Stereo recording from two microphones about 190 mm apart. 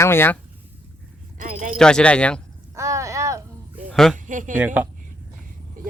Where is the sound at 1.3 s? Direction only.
45° right (ahead or behind).